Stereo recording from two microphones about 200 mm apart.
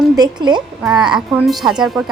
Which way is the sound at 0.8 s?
5° right (ahead or behind).